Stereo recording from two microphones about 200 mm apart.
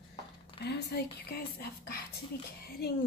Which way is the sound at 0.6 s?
55° left (ahead or behind).